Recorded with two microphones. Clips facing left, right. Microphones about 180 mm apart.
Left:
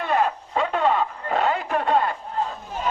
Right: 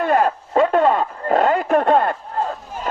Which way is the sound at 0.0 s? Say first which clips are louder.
Right 5 dB; 50° right (ahead or behind).